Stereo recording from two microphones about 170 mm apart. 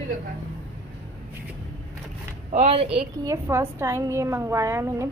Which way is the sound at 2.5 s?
40° right (ahead or behind).